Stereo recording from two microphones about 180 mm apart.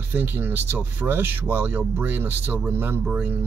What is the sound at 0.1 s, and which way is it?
Speech, 10° right (ahead or behind).